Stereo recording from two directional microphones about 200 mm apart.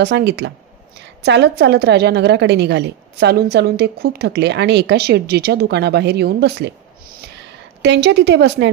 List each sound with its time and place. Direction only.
0.0 s a woman's voice: 55° right (ahead or behind)